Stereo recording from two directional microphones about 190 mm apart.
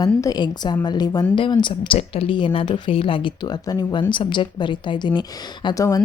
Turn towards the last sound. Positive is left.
turn(degrees=20)  # may be behind; listen again after turning